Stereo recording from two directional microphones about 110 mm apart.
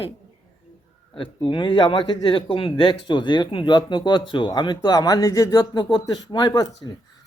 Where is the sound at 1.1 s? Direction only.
55° left (ahead or behind).